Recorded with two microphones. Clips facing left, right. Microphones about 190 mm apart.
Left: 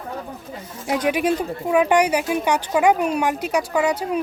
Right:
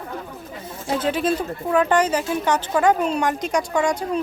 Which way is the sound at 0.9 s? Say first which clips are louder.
Left 1 dB; 15° left (ahead or behind).